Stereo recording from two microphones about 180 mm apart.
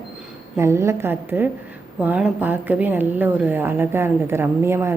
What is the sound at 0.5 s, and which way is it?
A woman's voice, 15° right (ahead or behind).